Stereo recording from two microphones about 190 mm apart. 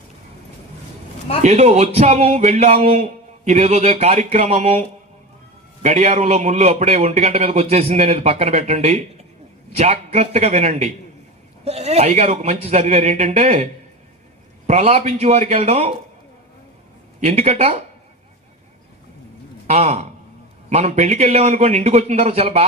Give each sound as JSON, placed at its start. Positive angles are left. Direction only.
{"t": 1.4, "sound": "speech", "side_deg": -35}
{"t": 14.7, "sound": "speech", "side_deg": -35}
{"t": 17.2, "sound": "speech", "side_deg": -35}
{"t": 19.6, "sound": "a man's voice", "side_deg": -35}